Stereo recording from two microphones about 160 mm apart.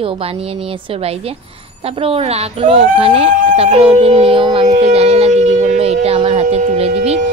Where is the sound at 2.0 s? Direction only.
35° right (ahead or behind).